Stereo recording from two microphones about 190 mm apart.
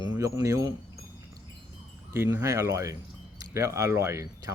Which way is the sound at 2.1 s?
15° right (ahead or behind).